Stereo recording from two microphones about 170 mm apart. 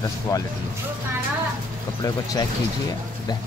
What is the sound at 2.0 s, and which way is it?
Speech, 20° left (ahead or behind).